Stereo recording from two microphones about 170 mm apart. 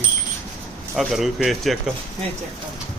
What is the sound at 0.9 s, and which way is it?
A man's voice, centre (ahead or behind).